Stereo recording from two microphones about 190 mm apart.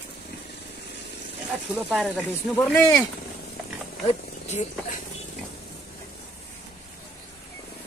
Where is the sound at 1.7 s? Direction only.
5° right (ahead or behind).